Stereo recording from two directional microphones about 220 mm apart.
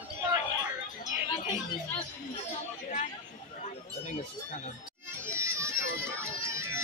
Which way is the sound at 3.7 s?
30° left (ahead or behind).